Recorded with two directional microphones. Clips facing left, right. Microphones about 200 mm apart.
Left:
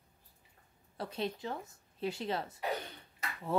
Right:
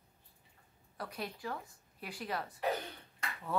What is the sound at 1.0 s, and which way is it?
A woman's voice, 25° left (ahead or behind).